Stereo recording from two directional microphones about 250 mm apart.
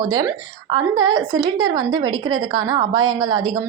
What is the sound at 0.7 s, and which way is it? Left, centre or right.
A woman's voice, centre.